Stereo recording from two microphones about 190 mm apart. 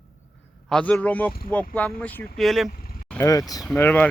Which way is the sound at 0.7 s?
5° left (ahead or behind).